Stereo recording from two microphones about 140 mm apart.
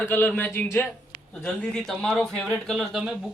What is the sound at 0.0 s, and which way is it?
A man's voice, 15° left (ahead or behind).